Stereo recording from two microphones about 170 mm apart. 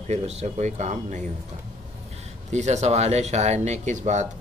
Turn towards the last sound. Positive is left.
turn(degrees=-45)  # may be behind; listen again after turning